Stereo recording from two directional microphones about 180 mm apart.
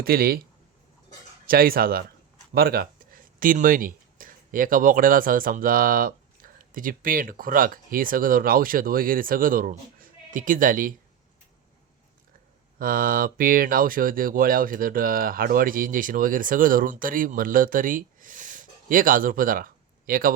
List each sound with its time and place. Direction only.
0.0 s speech: 55° right (ahead or behind)
1.5 s speech: 55° right (ahead or behind)
12.8 s speech: 50° right (ahead or behind)